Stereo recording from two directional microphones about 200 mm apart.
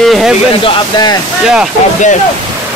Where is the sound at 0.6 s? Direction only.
25° left (ahead or behind).